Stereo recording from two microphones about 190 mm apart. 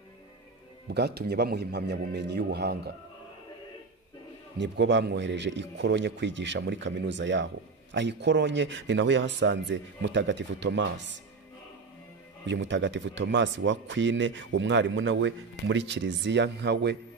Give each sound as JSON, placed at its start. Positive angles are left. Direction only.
{"t": 0.8, "sound": "a man's voice", "side_deg": -60}
{"t": 4.6, "sound": "a man's voice", "side_deg": -65}
{"t": 12.4, "sound": "a man's voice", "side_deg": -70}
{"t": 15.7, "sound": "a man's voice", "side_deg": -70}